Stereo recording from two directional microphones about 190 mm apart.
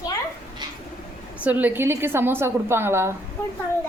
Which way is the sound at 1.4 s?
10° right (ahead or behind).